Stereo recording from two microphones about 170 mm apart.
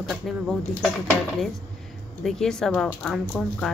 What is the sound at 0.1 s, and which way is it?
Speech, centre (ahead or behind).